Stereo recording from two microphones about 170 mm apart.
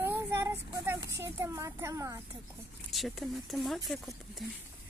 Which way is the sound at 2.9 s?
Centre (ahead or behind).